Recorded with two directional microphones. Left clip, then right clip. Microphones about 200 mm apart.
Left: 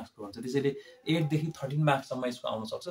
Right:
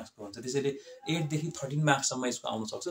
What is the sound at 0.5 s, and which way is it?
Speech, 15° left (ahead or behind).